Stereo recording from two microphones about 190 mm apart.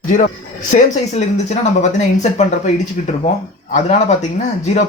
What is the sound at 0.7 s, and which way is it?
Speech, 35° left (ahead or behind).